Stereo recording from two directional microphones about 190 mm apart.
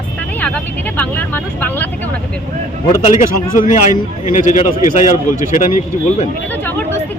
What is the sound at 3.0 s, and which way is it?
Speech, 40° left (ahead or behind).